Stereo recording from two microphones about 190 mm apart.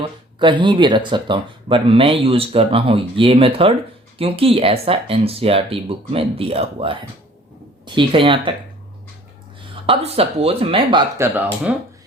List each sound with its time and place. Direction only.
0.0 s speech: 25° right (ahead or behind)
9.8 s speech: 30° right (ahead or behind)
11.7 s speech: 5° right (ahead or behind)